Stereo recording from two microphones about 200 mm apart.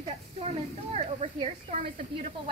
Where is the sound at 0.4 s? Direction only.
30° right (ahead or behind).